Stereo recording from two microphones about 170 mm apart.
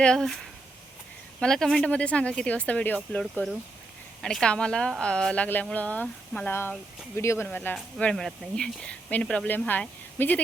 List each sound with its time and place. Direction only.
0.0 s speech: 5° left (ahead or behind)
1.4 s speech: 5° left (ahead or behind)